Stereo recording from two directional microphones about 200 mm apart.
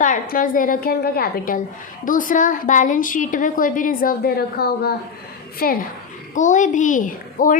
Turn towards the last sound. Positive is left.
turn(degrees=40)  # may be behind; listen again after turning